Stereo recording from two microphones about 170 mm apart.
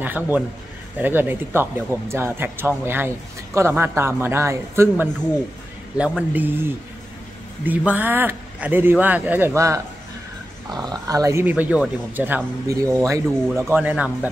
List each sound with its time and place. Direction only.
0.0 s speech: 10° right (ahead or behind)